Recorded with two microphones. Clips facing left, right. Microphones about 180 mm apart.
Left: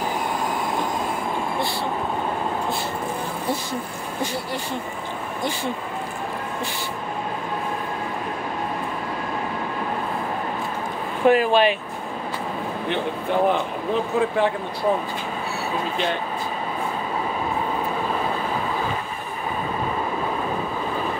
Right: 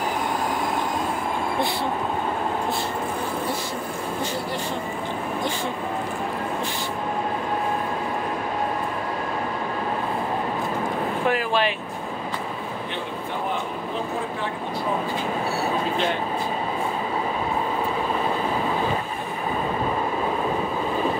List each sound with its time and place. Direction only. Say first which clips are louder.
11.2 s speech: left 8 dB; 20° left (ahead or behind)